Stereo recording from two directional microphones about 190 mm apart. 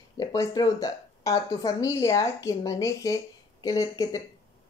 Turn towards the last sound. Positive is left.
turn(degrees=20)  # may be behind; listen again after turning